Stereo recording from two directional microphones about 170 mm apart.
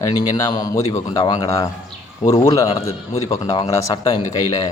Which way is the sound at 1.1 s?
30° left (ahead or behind).